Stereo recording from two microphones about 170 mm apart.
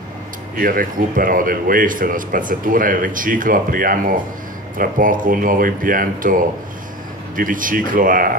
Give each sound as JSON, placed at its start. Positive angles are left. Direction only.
{"t": 0.6, "sound": "speech", "side_deg": -55}